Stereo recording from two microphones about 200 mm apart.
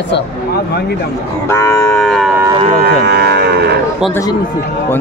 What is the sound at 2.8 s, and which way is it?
Livestock, 55° right (ahead or behind).